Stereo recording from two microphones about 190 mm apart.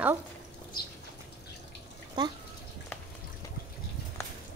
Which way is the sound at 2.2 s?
20° right (ahead or behind).